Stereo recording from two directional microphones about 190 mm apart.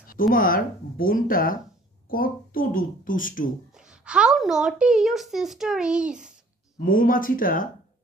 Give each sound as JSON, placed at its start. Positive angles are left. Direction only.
{"t": 0.0, "sound": "speech", "side_deg": 50}
{"t": 3.7, "sound": "a woman's voice", "side_deg": -5}
{"t": 6.8, "sound": "speech", "side_deg": 45}